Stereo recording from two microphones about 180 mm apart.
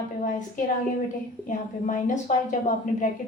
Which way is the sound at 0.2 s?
45° left (ahead or behind).